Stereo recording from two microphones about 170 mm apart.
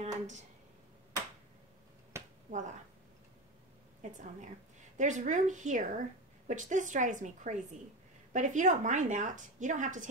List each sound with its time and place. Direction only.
0.0 s speech: 40° right (ahead or behind)
2.1 s finger snapping: 15° right (ahead or behind)
4.0 s a woman's voice: 45° right (ahead or behind)